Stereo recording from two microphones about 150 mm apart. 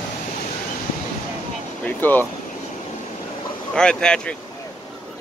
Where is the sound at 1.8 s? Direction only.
10° left (ahead or behind).